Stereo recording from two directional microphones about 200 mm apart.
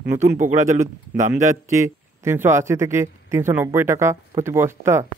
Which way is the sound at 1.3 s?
15° right (ahead or behind).